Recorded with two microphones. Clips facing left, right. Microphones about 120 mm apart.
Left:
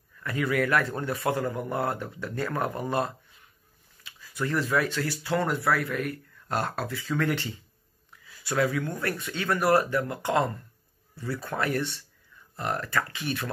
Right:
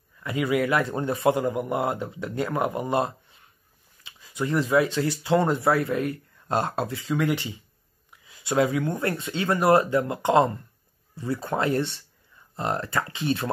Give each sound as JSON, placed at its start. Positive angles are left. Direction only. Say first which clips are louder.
{"t": 0.2, "sound": "speech", "louder": "right 3 dB", "side_deg": -15}